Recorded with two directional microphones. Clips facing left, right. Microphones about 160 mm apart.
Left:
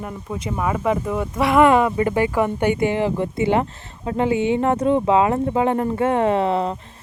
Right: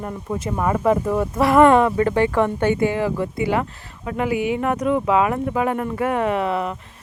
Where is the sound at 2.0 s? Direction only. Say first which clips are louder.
Right 1 dB; 15° left (ahead or behind).